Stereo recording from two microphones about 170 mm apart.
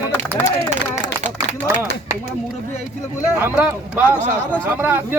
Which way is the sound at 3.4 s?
10° right (ahead or behind).